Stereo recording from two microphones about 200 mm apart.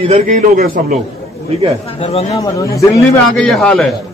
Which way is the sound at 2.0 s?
30° left (ahead or behind).